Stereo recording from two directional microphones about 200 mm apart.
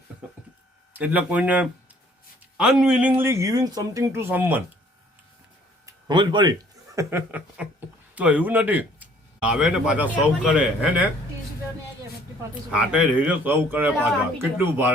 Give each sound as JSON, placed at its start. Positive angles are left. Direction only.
{"t": 0.2, "sound": "a sound", "side_deg": -5}
{"t": 0.9, "sound": "speech", "side_deg": -10}
{"t": 5.8, "sound": "a man's voice", "side_deg": -20}
{"t": 12.4, "sound": "speech", "side_deg": -5}